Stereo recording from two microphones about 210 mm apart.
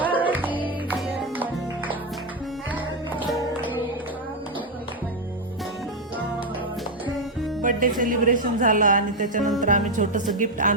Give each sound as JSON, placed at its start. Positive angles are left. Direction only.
{"t": 0.2, "sound": "music", "side_deg": -10}
{"t": 2.7, "sound": "music", "side_deg": -10}
{"t": 7.6, "sound": "a woman's voice", "side_deg": -40}